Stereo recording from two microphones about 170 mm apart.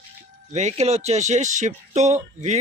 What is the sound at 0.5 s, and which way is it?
Speech, 40° right (ahead or behind).